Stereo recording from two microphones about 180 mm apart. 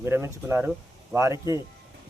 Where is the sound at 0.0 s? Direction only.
15° right (ahead or behind).